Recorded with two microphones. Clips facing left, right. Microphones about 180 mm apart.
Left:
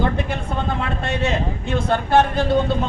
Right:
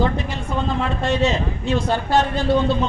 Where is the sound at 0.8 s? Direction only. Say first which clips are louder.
Right 3 dB; 60° left (ahead or behind).